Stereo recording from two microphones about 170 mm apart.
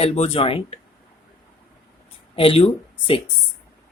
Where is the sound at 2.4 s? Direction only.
30° left (ahead or behind).